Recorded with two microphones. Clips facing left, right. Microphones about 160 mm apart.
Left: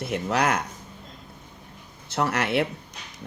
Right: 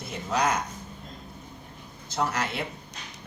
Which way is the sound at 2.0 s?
65° left (ahead or behind).